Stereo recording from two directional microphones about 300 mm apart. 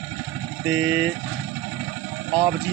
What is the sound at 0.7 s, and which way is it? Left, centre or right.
Speech, right.